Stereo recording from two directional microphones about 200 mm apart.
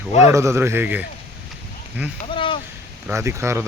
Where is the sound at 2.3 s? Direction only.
25° left (ahead or behind).